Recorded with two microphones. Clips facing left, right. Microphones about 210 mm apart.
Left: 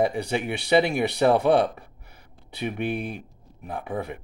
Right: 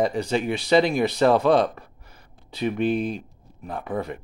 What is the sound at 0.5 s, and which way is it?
Speech, 65° left (ahead or behind).